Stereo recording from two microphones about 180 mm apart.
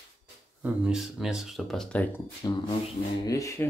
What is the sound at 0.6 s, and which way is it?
Speech, 5° right (ahead or behind).